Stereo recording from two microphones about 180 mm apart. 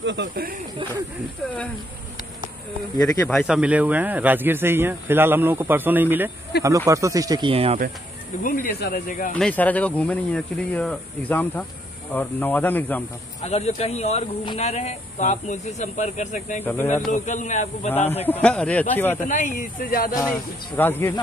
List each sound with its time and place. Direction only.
0.0 s speech: 75° right (ahead or behind)
3.0 s speech: 5° left (ahead or behind)
6.5 s speech: 65° left (ahead or behind)
6.9 s speech: 15° right (ahead or behind); by 7.8 s 35° right (ahead or behind)
8.4 s speech: 50° left (ahead or behind)
9.3 s speech: 5° left (ahead or behind)
13.4 s speech: 35° left (ahead or behind)
16.6 s speech: 15° left (ahead or behind)
17.1 s speech: 40° left (ahead or behind)
18.2 s speech: 10° left (ahead or behind)
19.2 s speech: 45° left (ahead or behind)
20.2 s speech: 15° left (ahead or behind)